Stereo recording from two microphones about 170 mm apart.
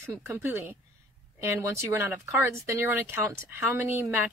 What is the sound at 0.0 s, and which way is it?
Speech, 15° right (ahead or behind).